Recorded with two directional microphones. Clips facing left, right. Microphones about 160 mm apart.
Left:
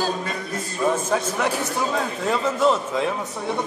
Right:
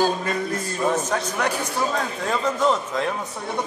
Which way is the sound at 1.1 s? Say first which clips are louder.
Left 2 dB; 5° left (ahead or behind).